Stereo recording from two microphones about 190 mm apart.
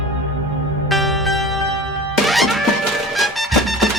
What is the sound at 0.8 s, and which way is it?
Music, centre (ahead or behind).